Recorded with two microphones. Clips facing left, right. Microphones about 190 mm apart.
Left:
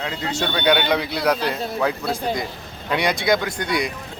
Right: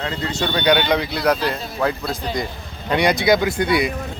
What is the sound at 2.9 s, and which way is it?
Speech, centre (ahead or behind).